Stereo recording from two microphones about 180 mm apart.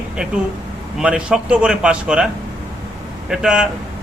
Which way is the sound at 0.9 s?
5° right (ahead or behind).